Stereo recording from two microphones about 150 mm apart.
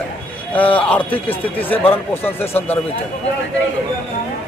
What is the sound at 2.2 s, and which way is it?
Speech, 15° left (ahead or behind).